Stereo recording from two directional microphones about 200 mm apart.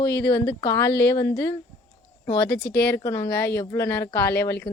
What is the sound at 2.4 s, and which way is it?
Speech, 55° left (ahead or behind).